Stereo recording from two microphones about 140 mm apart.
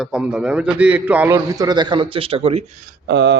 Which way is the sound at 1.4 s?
25° right (ahead or behind).